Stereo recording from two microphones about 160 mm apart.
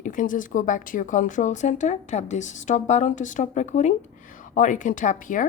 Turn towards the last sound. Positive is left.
turn(degrees=55)  # may be behind; listen again after turning